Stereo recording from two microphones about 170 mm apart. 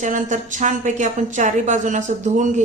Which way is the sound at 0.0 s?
50° right (ahead or behind).